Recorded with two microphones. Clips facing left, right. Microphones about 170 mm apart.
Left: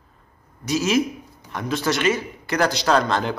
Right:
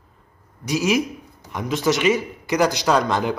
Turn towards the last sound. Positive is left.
turn(degrees=-15)  # may be behind; listen again after turning